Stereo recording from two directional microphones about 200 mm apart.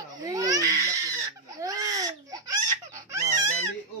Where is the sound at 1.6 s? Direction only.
15° right (ahead or behind).